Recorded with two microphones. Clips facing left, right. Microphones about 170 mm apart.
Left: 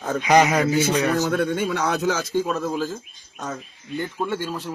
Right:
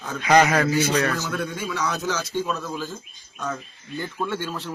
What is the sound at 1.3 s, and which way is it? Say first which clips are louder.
Speech: left 6 dB; 60° left (ahead or behind).